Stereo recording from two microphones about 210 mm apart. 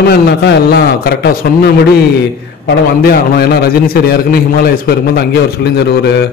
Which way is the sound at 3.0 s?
50° left (ahead or behind).